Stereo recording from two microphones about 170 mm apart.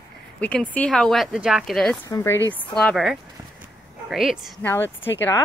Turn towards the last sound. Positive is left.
turn(degrees=15)  # may be behind; listen again after turning